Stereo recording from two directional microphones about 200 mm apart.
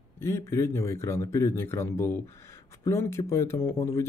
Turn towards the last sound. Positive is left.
turn(degrees=15)  # may be behind; listen again after turning